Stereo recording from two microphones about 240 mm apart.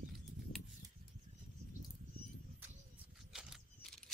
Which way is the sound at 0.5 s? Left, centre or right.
Left.